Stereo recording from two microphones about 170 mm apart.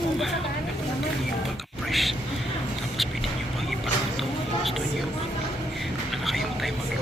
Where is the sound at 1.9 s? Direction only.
Centre (ahead or behind).